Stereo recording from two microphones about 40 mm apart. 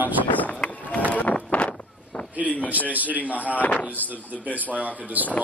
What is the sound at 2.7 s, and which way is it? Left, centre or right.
Speech, right.